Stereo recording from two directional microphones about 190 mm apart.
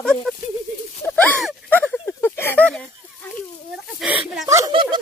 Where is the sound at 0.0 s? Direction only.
5° left (ahead or behind).